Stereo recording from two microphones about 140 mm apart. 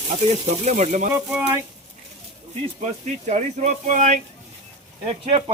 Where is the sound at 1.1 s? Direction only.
15° right (ahead or behind).